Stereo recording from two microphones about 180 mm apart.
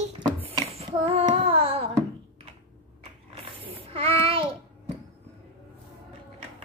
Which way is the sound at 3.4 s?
30° right (ahead or behind).